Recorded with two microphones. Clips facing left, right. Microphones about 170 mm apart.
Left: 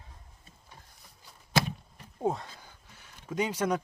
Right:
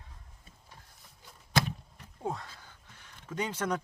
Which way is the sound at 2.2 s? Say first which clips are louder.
Left 6 dB; 20° left (ahead or behind).